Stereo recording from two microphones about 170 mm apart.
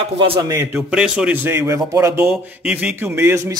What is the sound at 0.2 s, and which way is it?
Speech, 30° right (ahead or behind).